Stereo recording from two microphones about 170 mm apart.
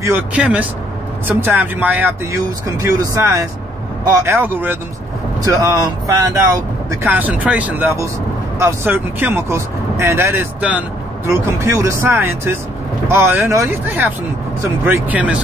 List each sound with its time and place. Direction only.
0.0 s speech: 10° right (ahead or behind)